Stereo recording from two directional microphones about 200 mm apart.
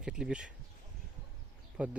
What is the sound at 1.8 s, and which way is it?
Speech, 5° right (ahead or behind).